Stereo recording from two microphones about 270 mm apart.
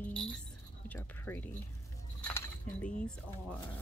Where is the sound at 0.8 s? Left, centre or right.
Centre.